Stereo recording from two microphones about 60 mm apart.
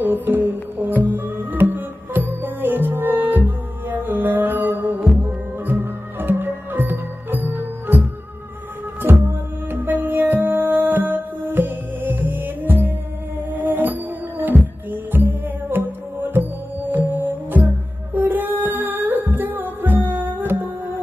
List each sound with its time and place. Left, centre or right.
0.0 s music: right